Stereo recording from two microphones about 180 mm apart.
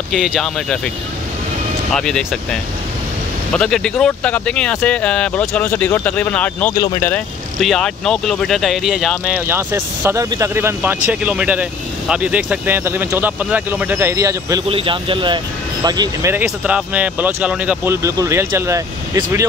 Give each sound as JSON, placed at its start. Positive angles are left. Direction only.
{"t": 0.1, "sound": "speech", "side_deg": 0}
{"t": 1.9, "sound": "speech", "side_deg": 5}
{"t": 6.7, "sound": "speech", "side_deg": 20}
{"t": 7.6, "sound": "speech", "side_deg": 0}
{"t": 14.7, "sound": "speech", "side_deg": -30}